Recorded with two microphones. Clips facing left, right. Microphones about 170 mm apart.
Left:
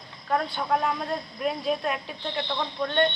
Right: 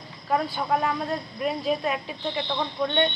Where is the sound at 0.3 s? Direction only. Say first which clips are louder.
Right 1 dB; 5° right (ahead or behind).